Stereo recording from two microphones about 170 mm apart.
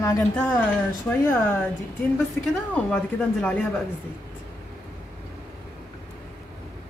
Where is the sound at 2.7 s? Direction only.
5° left (ahead or behind).